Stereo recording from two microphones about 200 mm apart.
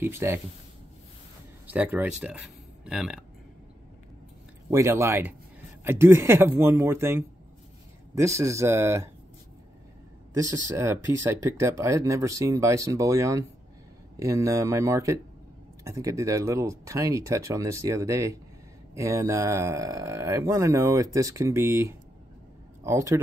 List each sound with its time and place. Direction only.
0.0 s speech: 10° right (ahead or behind)
1.7 s speech: 10° right (ahead or behind)
4.6 s speech: 15° right (ahead or behind)
10.3 s speech: 15° right (ahead or behind)